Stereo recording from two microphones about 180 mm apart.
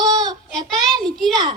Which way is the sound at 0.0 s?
25° right (ahead or behind).